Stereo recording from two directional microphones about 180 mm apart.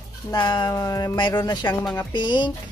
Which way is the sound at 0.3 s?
25° left (ahead or behind).